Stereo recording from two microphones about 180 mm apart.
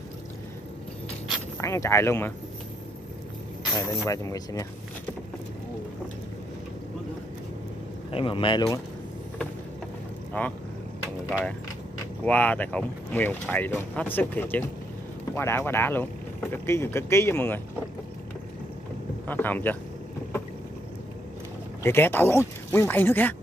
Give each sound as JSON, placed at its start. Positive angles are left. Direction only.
{"t": 1.6, "sound": "speech", "side_deg": 15}
{"t": 3.7, "sound": "speech", "side_deg": 15}
{"t": 8.1, "sound": "speech", "side_deg": 30}
{"t": 10.3, "sound": "speech", "side_deg": 10}
{"t": 12.3, "sound": "speech", "side_deg": 10}
{"t": 19.2, "sound": "speech", "side_deg": 10}
{"t": 21.8, "sound": "speech", "side_deg": 10}